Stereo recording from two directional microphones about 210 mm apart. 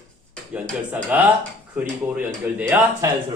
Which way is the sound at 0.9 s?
5° right (ahead or behind).